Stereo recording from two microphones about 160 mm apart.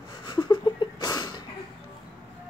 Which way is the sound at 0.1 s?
30° left (ahead or behind).